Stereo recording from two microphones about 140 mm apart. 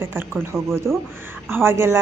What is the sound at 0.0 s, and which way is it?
A woman's voice, 15° right (ahead or behind).